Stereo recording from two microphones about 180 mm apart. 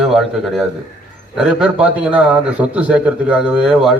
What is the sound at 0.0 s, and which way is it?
A man's voice, centre (ahead or behind).